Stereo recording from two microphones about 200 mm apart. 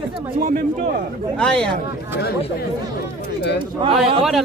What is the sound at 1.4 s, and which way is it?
Speech, 5° left (ahead or behind).